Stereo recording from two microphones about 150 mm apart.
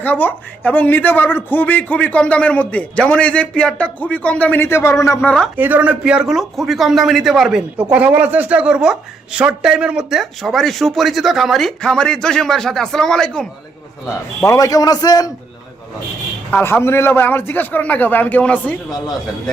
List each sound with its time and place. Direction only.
0.0 s a man's voice: 10° left (ahead or behind)
5.5 s a man's voice: 10° right (ahead or behind); by 13.5 s 5° left (ahead or behind)
14.1 s a man's voice: 20° left (ahead or behind)
16.5 s a man's voice: 15° left (ahead or behind)